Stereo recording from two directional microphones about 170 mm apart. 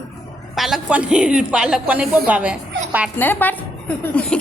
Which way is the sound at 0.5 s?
Centre (ahead or behind).